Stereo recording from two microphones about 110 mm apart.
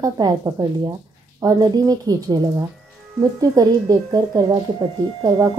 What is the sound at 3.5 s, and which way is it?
Speech, 35° right (ahead or behind).